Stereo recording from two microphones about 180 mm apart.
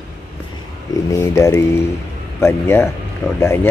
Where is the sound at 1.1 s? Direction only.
15° left (ahead or behind).